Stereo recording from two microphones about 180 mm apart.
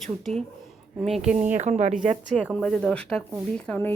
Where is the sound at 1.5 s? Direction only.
40° right (ahead or behind).